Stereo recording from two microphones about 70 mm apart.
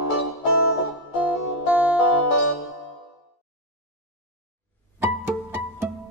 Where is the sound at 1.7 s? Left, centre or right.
Right.